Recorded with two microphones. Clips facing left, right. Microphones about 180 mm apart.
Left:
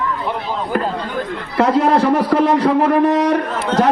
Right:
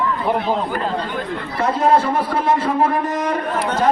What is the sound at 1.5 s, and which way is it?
A man's voice, 70° left (ahead or behind).